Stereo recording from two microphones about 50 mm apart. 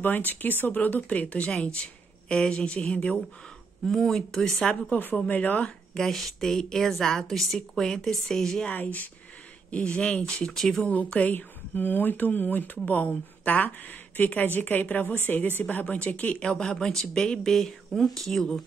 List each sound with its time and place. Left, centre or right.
0.0 s a woman's voice: left
3.8 s a woman's voice: centre
5.3 s a woman's voice: left
5.9 s a woman's voice: centre
8.7 s a woman's voice: left
9.7 s a woman's voice: left
11.3 s a woman's voice: left; by 18.6 s centre